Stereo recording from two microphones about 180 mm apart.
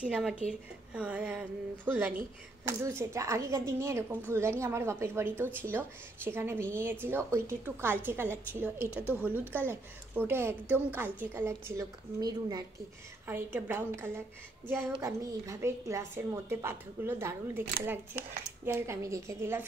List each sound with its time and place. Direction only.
0.0 s a woman's voice: 5° right (ahead or behind); by 12.6 s 20° right (ahead or behind)
13.3 s a woman's voice: 10° right (ahead or behind)